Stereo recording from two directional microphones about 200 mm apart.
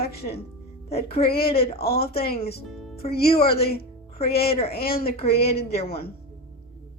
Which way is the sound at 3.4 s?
50° left (ahead or behind).